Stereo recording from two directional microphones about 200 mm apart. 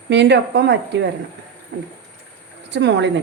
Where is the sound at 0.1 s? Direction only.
60° right (ahead or behind).